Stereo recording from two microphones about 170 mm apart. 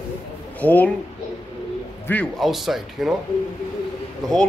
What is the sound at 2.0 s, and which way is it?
A man's voice, 10° left (ahead or behind).